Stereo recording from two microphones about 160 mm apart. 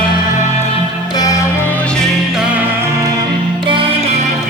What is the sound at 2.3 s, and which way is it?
Music, 5° right (ahead or behind).